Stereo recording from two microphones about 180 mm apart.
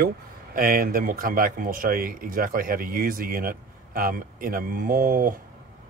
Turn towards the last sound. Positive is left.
turn(degrees=-55)  # may be behind; listen again after turning